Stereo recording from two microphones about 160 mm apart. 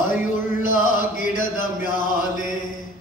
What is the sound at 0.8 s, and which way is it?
Music, 55° left (ahead or behind).